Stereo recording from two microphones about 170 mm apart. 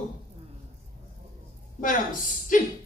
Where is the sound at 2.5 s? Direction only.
50° left (ahead or behind).